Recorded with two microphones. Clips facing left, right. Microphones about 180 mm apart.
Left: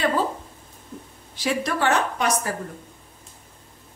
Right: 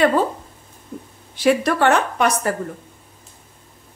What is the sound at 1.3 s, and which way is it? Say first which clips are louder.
A woman's voice: right 8 dB; 60° right (ahead or behind).